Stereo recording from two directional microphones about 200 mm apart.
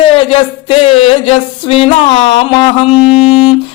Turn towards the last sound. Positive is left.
turn(degrees=30)  # may be behind; listen again after turning